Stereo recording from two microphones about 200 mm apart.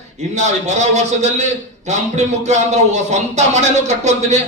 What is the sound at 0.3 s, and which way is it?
Speech, 35° right (ahead or behind).